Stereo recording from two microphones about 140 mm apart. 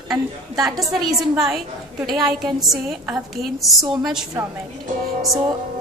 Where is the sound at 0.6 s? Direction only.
25° right (ahead or behind).